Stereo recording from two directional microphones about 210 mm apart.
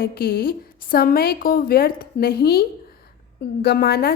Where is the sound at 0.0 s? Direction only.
45° left (ahead or behind).